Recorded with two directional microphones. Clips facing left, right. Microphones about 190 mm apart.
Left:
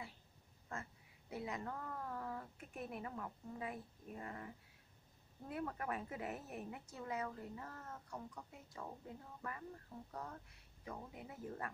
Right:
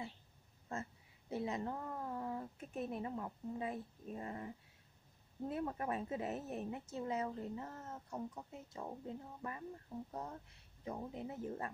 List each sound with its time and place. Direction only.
0.7 s a sound: 25° right (ahead or behind)
1.3 s a woman's voice: 25° right (ahead or behind)
5.5 s a woman's voice: 25° right (ahead or behind)